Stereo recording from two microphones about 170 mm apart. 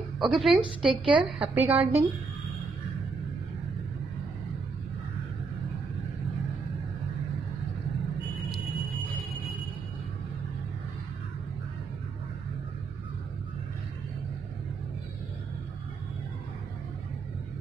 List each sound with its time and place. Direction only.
0.2 s a woman's voice: centre (ahead or behind)
0.8 s a woman's voice: 30° right (ahead or behind)
1.2 s a woman's voice: 10° right (ahead or behind)